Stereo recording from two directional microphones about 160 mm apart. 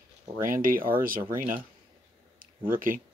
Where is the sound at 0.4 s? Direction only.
60° right (ahead or behind).